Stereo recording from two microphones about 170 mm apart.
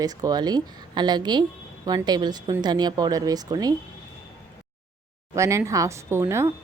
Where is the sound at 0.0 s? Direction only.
20° right (ahead or behind).